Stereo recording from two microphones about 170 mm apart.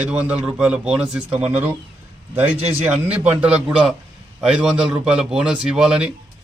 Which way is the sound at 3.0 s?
10° right (ahead or behind).